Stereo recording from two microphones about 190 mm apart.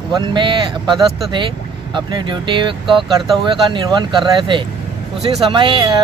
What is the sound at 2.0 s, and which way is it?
Speech, 25° right (ahead or behind).